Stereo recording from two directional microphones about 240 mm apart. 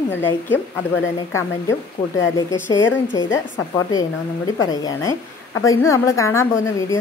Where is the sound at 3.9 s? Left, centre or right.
Centre.